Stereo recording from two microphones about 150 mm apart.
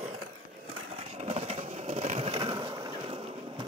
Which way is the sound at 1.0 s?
40° right (ahead or behind).